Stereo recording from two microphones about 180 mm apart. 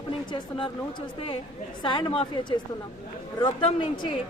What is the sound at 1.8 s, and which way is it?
Speech, 25° left (ahead or behind).